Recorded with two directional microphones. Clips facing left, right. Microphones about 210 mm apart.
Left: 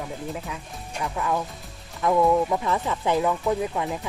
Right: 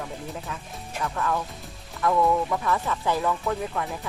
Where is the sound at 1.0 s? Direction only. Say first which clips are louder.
Left 1 dB; 15° left (ahead or behind).